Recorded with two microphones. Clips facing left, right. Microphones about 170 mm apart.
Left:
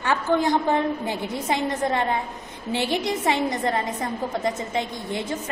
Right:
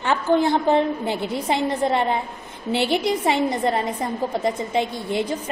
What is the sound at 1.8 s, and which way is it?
Speech, 20° right (ahead or behind).